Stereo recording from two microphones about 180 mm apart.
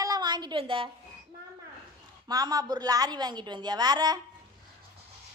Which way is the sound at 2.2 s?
20° right (ahead or behind).